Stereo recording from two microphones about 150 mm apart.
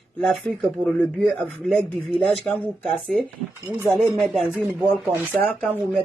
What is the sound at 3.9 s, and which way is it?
Speech, centre (ahead or behind).